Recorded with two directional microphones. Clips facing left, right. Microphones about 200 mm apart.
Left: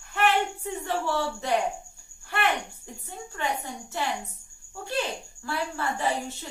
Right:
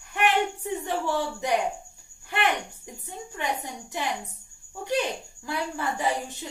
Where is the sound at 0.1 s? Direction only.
15° right (ahead or behind).